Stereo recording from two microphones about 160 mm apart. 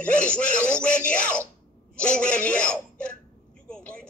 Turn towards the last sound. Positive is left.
turn(degrees=5)  # may be behind; listen again after turning